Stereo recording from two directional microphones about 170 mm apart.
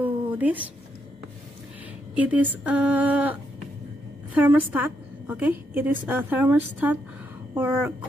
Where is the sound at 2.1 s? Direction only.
10° right (ahead or behind).